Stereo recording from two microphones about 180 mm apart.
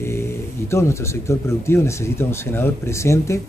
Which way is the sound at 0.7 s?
15° left (ahead or behind).